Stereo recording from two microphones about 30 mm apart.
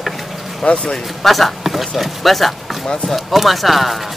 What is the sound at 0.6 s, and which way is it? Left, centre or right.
Speech, left.